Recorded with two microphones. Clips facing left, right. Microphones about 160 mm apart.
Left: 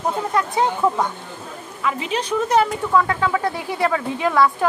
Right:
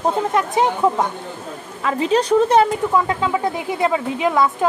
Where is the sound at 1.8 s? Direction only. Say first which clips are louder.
Right 6 dB; 35° right (ahead or behind).